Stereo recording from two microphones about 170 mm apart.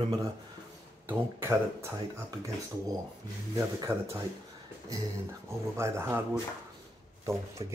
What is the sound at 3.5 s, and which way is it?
Speech, 20° right (ahead or behind).